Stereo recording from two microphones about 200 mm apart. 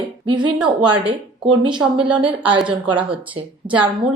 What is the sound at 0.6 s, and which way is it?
Speech, 5° right (ahead or behind).